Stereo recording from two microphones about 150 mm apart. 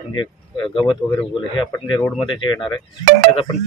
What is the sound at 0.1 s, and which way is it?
A man's voice, 35° left (ahead or behind).